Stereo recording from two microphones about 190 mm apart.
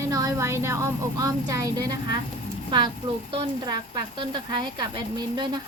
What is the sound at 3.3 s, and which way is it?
Speech, 25° right (ahead or behind).